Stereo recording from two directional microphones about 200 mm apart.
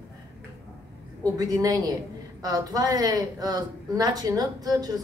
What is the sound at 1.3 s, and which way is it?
Speech, 15° right (ahead or behind).